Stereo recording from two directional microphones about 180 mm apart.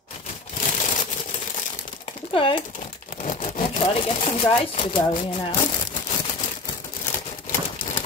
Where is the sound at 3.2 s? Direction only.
45° left (ahead or behind).